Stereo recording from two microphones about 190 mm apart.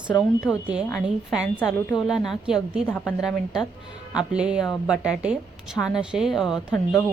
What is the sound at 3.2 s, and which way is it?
A woman's voice, centre (ahead or behind).